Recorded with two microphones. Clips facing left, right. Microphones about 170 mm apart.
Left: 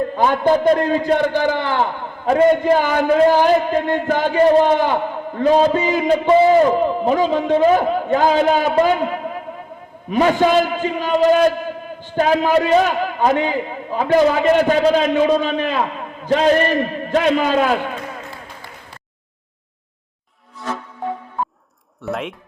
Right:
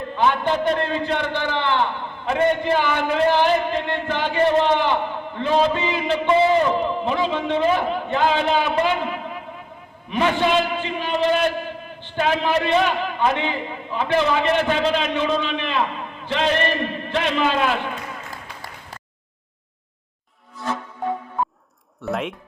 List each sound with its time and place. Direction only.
0.2 s a man's voice: 40° left (ahead or behind)
10.1 s a man's voice: 40° left (ahead or behind)
22.0 s speech: centre (ahead or behind)